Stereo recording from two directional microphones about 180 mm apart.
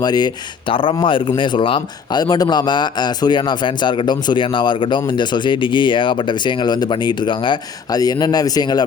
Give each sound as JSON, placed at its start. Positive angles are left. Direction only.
{"t": 0.0, "sound": "a man's voice", "side_deg": 25}